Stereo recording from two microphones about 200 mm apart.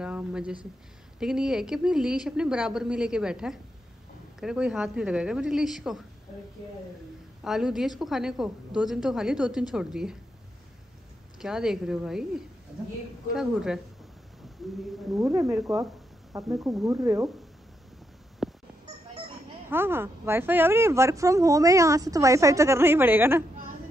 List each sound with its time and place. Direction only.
0.0 s speech: 5° right (ahead or behind)
7.4 s speech: centre (ahead or behind)
11.3 s speech: 5° right (ahead or behind)
15.1 s a woman's voice: 15° right (ahead or behind)
18.4 s honk: centre (ahead or behind)
19.7 s a woman's voice: 10° right (ahead or behind)